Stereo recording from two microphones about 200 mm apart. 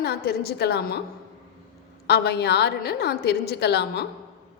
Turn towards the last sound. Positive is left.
turn(degrees=55)  # may be behind; listen again after turning